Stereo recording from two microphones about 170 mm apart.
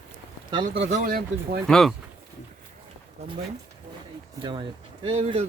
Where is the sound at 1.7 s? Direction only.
Centre (ahead or behind).